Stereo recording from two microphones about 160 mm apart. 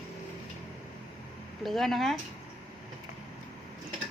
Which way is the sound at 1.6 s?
Centre (ahead or behind).